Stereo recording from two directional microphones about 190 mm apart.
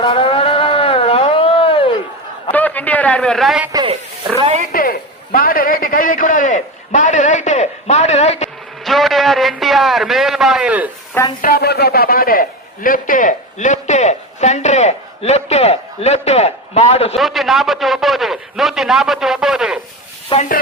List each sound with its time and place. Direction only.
0.0 s a sound: 30° left (ahead or behind)
2.5 s a man's voice: 10° left (ahead or behind)
3.7 s speech: 20° right (ahead or behind)
4.7 s a man's voice: 50° left (ahead or behind)
8.8 s a man's voice: centre (ahead or behind)
11.4 s a man's voice: 55° left (ahead or behind); by 17.2 s 35° left (ahead or behind)
17.2 s a man's voice: centre (ahead or behind)
20.3 s speech: 25° left (ahead or behind)